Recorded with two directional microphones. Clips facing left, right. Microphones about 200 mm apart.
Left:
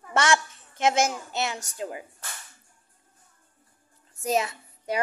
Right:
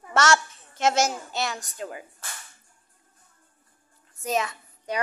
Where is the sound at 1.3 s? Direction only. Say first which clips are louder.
Even; 20° left (ahead or behind).